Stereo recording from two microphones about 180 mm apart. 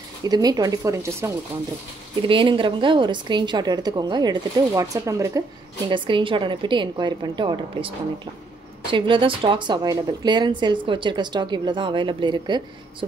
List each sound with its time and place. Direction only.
0.2 s a woman's voice: 20° right (ahead or behind)
2.2 s a woman's voice: 30° right (ahead or behind)
8.9 s a woman's voice: 25° right (ahead or behind)